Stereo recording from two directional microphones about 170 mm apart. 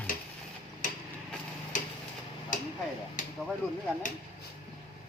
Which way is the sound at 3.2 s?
50° left (ahead or behind).